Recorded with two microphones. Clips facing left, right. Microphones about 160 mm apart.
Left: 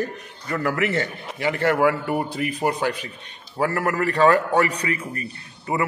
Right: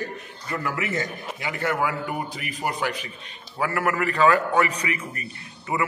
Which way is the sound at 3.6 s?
35° left (ahead or behind).